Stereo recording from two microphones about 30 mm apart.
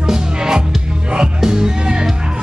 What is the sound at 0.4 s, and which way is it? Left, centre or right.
Music, right.